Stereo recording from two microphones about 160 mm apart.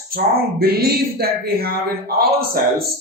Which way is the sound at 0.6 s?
75° right (ahead or behind).